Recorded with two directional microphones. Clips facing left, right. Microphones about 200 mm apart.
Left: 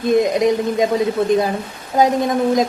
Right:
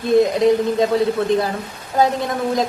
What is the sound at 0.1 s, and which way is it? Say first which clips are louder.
Speech: right 1 dB; 15° left (ahead or behind).